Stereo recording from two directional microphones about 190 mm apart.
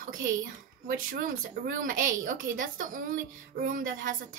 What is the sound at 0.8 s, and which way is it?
A woman's voice, 50° right (ahead or behind).